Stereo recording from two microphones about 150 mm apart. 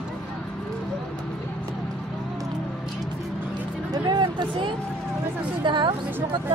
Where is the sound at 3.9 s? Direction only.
30° right (ahead or behind).